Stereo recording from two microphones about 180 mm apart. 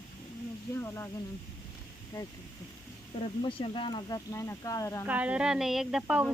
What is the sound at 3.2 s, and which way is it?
Speech, 30° left (ahead or behind).